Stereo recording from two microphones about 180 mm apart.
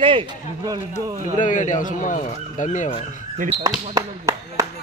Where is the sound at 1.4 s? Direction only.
45° left (ahead or behind).